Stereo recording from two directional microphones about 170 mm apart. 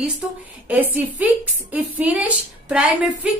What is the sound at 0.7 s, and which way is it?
A woman's voice, 10° right (ahead or behind).